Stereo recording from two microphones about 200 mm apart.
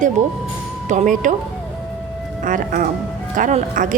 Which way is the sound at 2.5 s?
40° right (ahead or behind).